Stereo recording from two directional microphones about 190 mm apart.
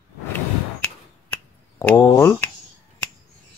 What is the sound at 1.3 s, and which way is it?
Finger snapping, 10° left (ahead or behind).